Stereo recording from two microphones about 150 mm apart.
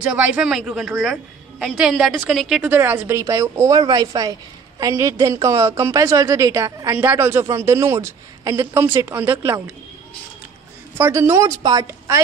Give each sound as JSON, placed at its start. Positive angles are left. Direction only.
{"t": 0.1, "sound": "a man's voice", "side_deg": -10}
{"t": 7.0, "sound": "a woman's voice", "side_deg": -15}
{"t": 11.0, "sound": "a woman's voice", "side_deg": -20}